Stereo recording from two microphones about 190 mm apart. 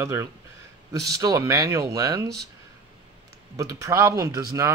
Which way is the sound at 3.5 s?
15° right (ahead or behind).